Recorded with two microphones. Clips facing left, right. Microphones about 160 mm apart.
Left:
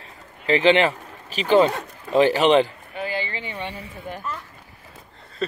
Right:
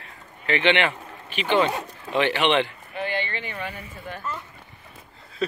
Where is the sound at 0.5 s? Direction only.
35° left (ahead or behind).